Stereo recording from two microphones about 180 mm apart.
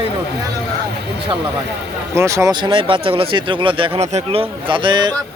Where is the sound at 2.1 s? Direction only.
15° right (ahead or behind).